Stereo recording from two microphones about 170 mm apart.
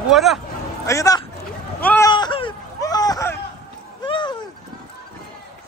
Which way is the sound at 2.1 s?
30° left (ahead or behind).